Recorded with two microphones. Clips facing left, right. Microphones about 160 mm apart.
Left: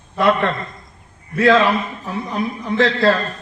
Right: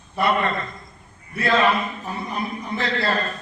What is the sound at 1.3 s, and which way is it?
A man's voice, 90° left.